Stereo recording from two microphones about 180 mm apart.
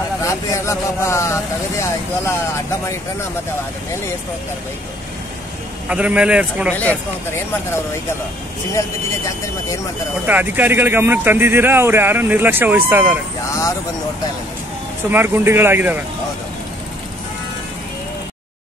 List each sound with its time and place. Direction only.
0.2 s speech: 15° left (ahead or behind)
5.9 s speech: 5° right (ahead or behind)
10.2 s speech: 10° right (ahead or behind)
15.0 s speech: 10° right (ahead or behind)